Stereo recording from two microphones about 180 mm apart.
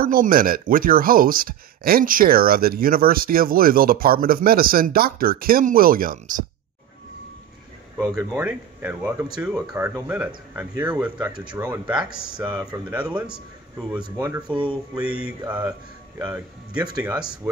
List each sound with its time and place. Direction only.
0.0 s speech: 55° right (ahead or behind)
8.0 s speech: 15° right (ahead or behind)